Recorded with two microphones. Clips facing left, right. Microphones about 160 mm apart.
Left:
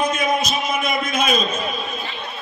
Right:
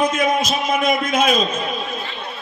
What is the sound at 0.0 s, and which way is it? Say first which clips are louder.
A man's voice: right 2 dB; 90° right.